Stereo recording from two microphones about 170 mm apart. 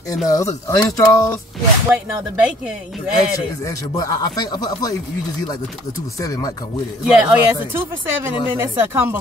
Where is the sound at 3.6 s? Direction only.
20° left (ahead or behind).